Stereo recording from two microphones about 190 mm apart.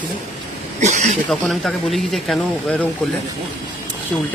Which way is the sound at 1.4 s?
5° left (ahead or behind).